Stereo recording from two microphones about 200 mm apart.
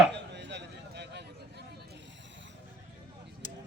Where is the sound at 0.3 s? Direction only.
60° right (ahead or behind).